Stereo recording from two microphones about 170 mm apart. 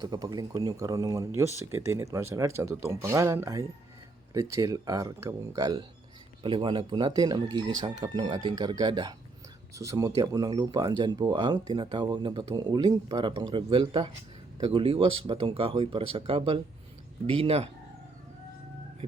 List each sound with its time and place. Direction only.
0.0 s speech: 25° right (ahead or behind)